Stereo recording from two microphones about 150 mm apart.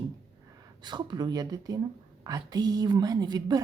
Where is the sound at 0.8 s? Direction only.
30° right (ahead or behind).